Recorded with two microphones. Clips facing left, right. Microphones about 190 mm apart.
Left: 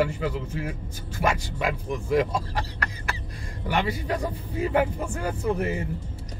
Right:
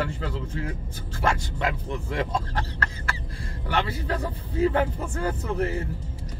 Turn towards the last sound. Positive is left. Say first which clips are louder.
# left 1 dB
turn(degrees=15)  # may be behind; listen again after turning